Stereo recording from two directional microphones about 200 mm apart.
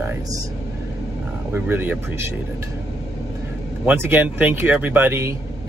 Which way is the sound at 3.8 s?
10° right (ahead or behind).